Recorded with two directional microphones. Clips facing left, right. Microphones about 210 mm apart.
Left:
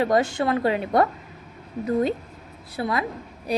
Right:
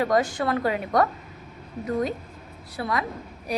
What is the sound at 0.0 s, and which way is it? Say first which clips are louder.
A woman's voice: left 2 dB; 25° left (ahead or behind).